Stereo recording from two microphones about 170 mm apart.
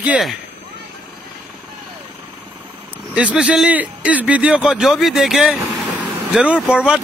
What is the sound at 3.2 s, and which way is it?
A man's voice, 5° right (ahead or behind).